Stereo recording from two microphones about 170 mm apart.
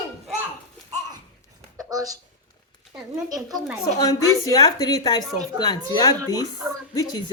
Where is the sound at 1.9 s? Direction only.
20° right (ahead or behind).